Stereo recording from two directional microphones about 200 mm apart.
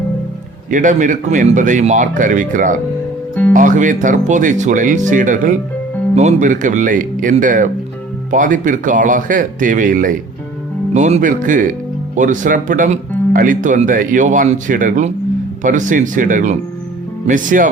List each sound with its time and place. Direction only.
0.7 s speech: 40° right (ahead or behind)